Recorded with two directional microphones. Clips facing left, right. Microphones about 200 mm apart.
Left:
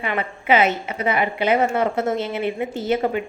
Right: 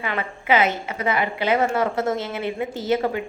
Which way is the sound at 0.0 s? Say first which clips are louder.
Left 2 dB; 20° left (ahead or behind).